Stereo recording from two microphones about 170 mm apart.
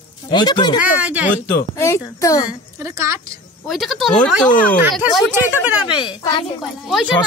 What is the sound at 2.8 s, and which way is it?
Speech, 15° right (ahead or behind).